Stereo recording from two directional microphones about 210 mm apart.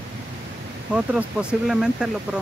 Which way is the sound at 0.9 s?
5° right (ahead or behind).